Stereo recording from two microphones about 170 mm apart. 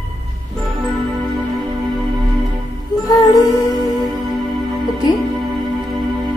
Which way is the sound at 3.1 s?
20° left (ahead or behind).